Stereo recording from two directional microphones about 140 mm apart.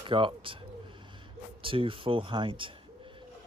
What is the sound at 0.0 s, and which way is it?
Speech, 35° right (ahead or behind).